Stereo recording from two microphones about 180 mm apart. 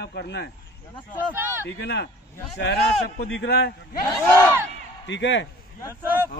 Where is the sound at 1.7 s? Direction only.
75° left (ahead or behind).